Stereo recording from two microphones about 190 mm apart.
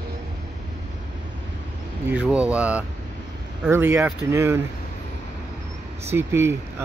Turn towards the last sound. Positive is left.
turn(degrees=-15)  # may be behind; listen again after turning